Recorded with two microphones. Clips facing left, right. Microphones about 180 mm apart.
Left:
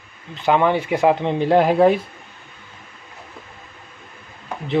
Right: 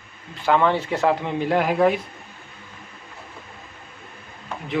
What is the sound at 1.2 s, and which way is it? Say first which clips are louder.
Speech: left 5 dB; 30° left (ahead or behind).